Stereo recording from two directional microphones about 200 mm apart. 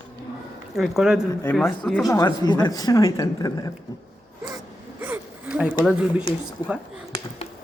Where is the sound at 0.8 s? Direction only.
Centre (ahead or behind).